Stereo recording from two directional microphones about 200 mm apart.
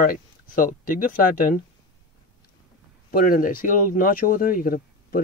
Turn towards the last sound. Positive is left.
turn(degrees=45)  # may be behind; listen again after turning